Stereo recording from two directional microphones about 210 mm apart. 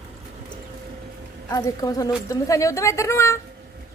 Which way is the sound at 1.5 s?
15° left (ahead or behind).